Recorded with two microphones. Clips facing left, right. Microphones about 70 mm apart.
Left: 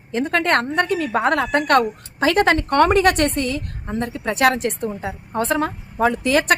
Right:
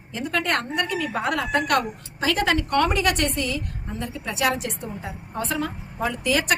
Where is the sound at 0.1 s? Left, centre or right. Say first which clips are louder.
Left 6 dB; left.